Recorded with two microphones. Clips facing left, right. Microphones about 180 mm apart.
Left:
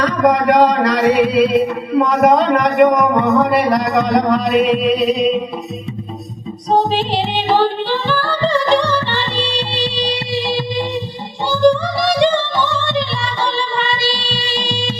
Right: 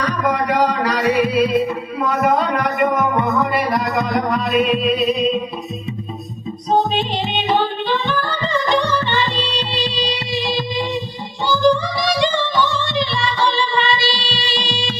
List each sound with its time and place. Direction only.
0.0 s a man's voice: 70° left (ahead or behind)
6.7 s music: 80° left; by 14.8 s 55° left (ahead or behind)